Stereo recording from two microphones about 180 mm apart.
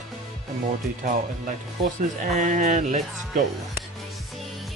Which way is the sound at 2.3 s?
45° right (ahead or behind).